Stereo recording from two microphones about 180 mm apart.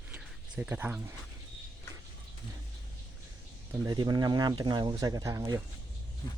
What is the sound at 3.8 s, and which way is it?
Speech, 25° right (ahead or behind).